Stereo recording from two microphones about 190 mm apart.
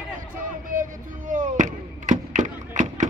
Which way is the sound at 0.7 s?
45° right (ahead or behind).